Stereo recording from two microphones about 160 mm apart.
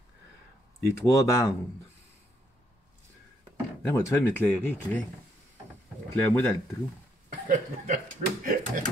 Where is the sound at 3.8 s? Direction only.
20° left (ahead or behind).